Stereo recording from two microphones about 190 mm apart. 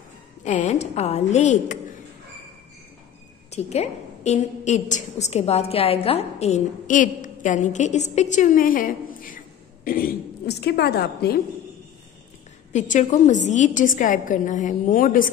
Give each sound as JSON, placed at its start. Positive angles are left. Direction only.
{"t": 0.4, "sound": "a woman's voice", "side_deg": 35}
{"t": 3.4, "sound": "a woman's voice", "side_deg": 35}
{"t": 12.7, "sound": "a woman's voice", "side_deg": 40}